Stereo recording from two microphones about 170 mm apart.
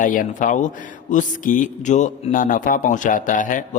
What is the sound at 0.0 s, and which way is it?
A man's voice, 50° left (ahead or behind).